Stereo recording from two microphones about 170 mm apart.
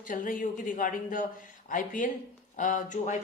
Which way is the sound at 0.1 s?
50° left (ahead or behind).